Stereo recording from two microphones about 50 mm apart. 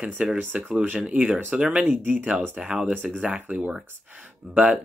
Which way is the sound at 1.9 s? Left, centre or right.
Right.